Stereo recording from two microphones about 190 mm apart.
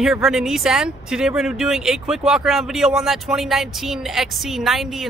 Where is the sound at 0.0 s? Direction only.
Centre (ahead or behind).